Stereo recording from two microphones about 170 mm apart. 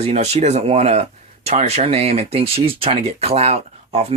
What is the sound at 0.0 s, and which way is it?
Speech, 40° right (ahead or behind).